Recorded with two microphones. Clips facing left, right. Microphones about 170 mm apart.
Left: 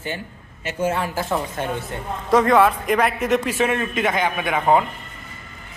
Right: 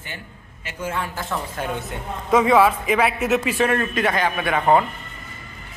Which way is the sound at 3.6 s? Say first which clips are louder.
Right 1 dB; 10° left (ahead or behind).